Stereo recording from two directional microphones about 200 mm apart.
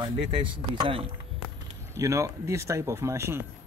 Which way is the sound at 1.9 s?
15° right (ahead or behind).